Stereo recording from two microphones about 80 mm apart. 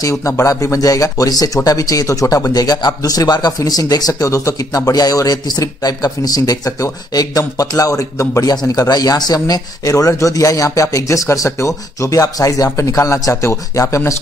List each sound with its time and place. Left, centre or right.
0.0 s a man's voice: left
4.9 s a man's voice: left